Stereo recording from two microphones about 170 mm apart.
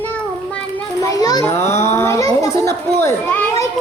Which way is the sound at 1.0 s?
20° left (ahead or behind).